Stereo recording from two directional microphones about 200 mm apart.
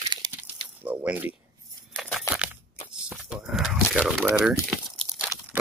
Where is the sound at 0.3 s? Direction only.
10° right (ahead or behind).